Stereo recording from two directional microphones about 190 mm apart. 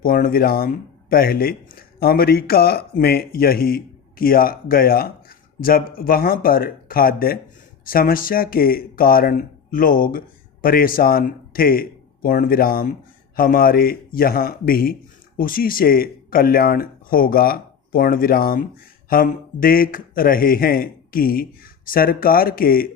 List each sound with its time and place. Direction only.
0.0 s speech: 50° left (ahead or behind)